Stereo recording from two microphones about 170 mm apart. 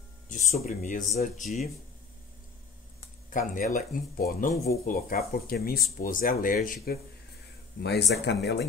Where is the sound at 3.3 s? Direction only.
50° left (ahead or behind).